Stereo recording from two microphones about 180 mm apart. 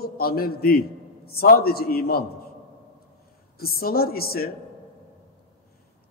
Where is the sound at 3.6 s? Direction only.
55° left (ahead or behind).